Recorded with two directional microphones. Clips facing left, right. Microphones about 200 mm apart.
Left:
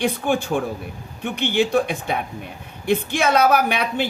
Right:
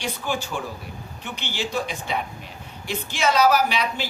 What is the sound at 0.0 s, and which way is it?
A woman's voice, 55° left (ahead or behind).